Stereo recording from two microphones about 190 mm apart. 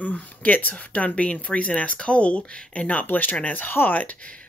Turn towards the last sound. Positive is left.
turn(degrees=10)  # may be behind; listen again after turning